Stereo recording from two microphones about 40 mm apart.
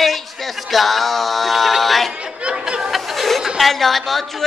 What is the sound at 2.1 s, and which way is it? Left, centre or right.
Chatter, right.